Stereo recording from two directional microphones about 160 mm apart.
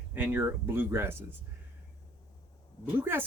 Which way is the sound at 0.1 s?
10° right (ahead or behind).